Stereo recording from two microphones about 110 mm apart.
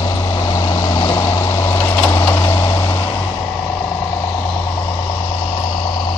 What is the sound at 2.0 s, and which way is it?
Vehicle, 20° left (ahead or behind).